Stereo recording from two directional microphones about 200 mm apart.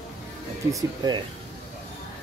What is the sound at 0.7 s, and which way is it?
Speech, 20° right (ahead or behind).